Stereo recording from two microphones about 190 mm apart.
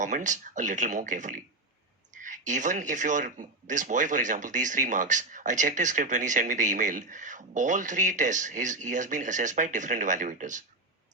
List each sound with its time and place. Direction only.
0.0 s speech: 40° right (ahead or behind)